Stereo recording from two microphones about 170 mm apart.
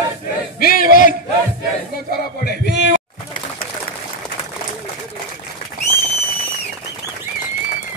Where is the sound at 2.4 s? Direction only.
85° left.